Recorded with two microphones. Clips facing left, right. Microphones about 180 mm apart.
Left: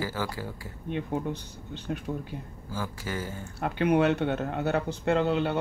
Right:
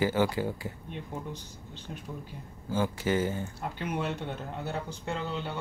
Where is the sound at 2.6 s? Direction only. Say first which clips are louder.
Right 7 dB; 25° right (ahead or behind).